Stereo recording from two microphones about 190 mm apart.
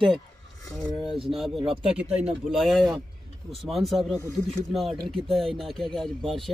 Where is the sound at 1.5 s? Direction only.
30° right (ahead or behind).